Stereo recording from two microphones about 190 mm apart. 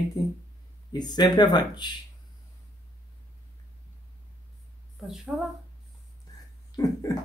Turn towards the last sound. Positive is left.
turn(degrees=20)  # may be behind; listen again after turning